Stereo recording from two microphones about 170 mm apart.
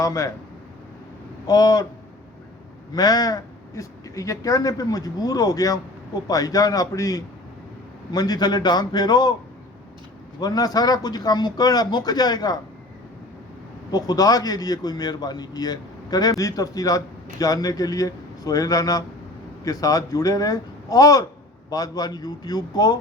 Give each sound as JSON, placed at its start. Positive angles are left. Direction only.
{"t": 0.0, "sound": "a man's voice", "side_deg": 20}
{"t": 1.5, "sound": "a man's voice", "side_deg": 25}
{"t": 2.9, "sound": "a man's voice", "side_deg": 25}
{"t": 10.4, "sound": "a man's voice", "side_deg": 20}
{"t": 13.9, "sound": "a man's voice", "side_deg": 20}